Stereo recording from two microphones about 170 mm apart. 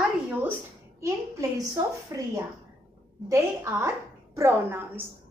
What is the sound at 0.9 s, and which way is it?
A woman's voice, 15° right (ahead or behind).